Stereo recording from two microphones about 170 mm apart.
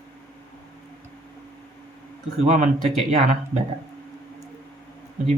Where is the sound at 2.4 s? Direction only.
40° right (ahead or behind).